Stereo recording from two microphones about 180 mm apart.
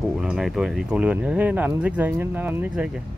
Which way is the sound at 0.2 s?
5° right (ahead or behind).